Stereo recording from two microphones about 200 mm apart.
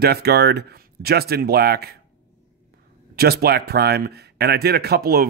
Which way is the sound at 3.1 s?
50° right (ahead or behind).